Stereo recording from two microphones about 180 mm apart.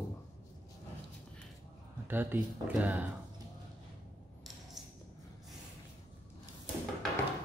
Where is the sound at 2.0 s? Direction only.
10° right (ahead or behind).